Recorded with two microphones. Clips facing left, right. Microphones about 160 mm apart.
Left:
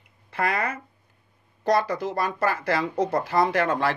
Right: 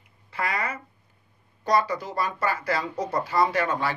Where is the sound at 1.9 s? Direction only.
50° left (ahead or behind).